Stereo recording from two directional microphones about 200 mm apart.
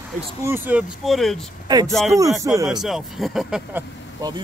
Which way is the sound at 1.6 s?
20° right (ahead or behind).